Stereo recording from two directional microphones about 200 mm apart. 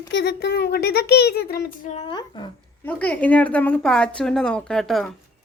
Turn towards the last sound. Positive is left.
turn(degrees=0)  # may be behind; listen again after turning